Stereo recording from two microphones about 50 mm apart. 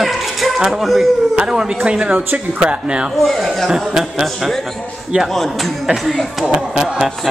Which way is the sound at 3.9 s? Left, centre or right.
Centre.